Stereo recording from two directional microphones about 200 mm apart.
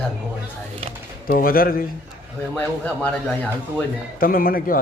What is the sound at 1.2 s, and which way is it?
Speech, 45° left (ahead or behind).